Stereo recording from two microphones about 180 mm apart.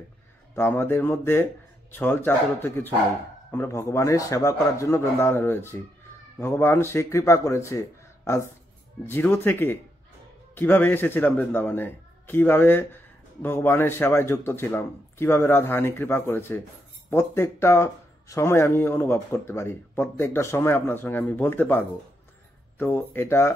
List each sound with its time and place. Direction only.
0.6 s speech: 10° left (ahead or behind)